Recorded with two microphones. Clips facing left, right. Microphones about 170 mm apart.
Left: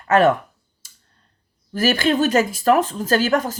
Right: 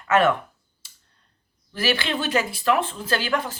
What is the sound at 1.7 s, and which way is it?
Speech, 45° left (ahead or behind).